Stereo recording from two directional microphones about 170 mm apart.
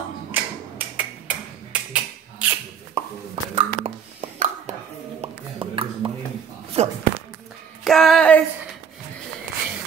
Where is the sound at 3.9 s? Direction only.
40° right (ahead or behind).